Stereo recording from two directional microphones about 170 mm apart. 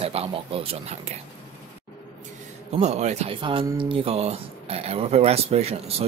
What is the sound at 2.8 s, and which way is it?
Speech, 40° right (ahead or behind).